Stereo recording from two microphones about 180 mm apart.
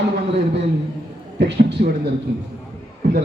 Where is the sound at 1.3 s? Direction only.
70° right (ahead or behind).